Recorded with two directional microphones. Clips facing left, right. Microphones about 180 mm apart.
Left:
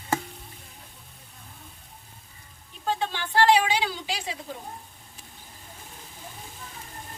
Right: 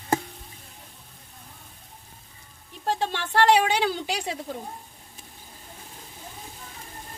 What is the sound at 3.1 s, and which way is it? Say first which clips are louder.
Speech: even; 65° right (ahead or behind).